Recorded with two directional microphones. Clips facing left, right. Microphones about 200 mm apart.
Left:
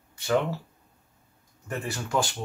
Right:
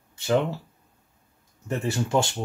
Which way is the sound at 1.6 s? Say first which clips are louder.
Right 6 dB; 25° right (ahead or behind).